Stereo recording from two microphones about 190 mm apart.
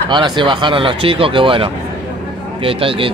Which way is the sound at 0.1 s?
25° right (ahead or behind).